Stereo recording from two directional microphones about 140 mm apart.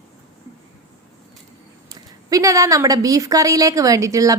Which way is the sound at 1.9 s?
25° right (ahead or behind).